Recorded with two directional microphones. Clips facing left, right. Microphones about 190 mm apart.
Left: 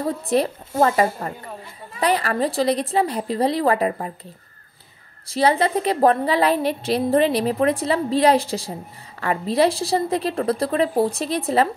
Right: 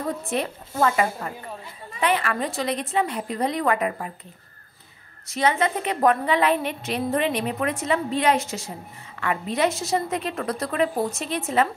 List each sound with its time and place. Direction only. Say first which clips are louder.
0.0 s a woman's voice: left 6 dB; 35° left (ahead or behind)
5.3 s a woman's voice: left 4 dB; 35° left (ahead or behind)